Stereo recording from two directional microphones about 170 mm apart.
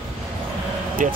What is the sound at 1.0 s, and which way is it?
Speech, 50° right (ahead or behind).